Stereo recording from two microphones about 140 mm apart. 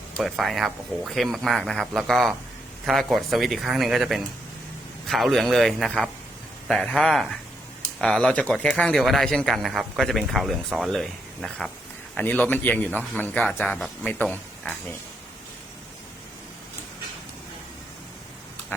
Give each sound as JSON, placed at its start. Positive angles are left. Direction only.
{"t": 0.2, "sound": "a man's voice", "side_deg": 0}
{"t": 18.7, "sound": "dog", "side_deg": 15}